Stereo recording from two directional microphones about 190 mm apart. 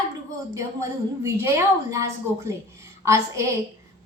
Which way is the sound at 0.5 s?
15° right (ahead or behind).